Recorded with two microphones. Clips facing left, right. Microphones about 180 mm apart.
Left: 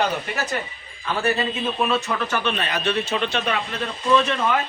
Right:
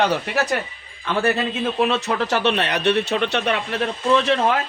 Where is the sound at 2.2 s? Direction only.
75° right (ahead or behind).